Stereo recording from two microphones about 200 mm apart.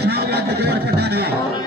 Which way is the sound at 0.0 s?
55° right (ahead or behind).